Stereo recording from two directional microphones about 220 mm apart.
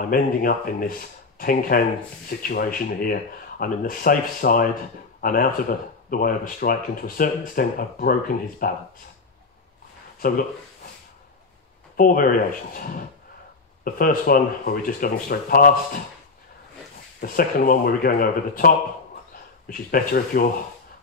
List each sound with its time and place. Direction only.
0.0 s speech: 40° left (ahead or behind)
12.0 s speech: 40° left (ahead or behind)
17.2 s speech: 40° left (ahead or behind)
19.7 s speech: 40° left (ahead or behind)